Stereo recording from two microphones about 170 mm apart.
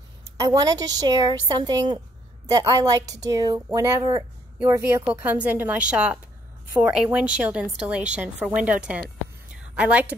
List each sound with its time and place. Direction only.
0.4 s a woman's voice: 20° right (ahead or behind)